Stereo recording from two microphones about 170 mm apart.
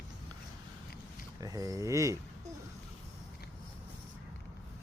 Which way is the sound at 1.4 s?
20° right (ahead or behind).